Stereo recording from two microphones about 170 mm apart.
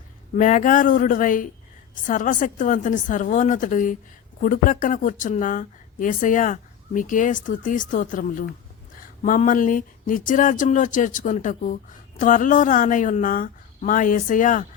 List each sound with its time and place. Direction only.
0.3 s speech: 50° left (ahead or behind)